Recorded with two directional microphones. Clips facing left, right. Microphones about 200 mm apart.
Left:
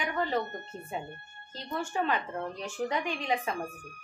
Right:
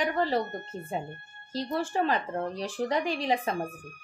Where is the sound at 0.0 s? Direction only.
35° right (ahead or behind).